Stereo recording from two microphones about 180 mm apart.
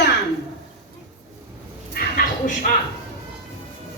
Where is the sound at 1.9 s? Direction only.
55° left (ahead or behind).